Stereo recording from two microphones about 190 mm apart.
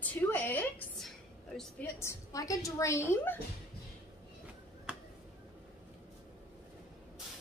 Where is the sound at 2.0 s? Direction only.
15° left (ahead or behind).